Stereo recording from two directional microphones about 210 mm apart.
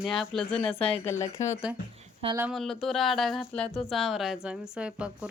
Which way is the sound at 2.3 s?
5° right (ahead or behind).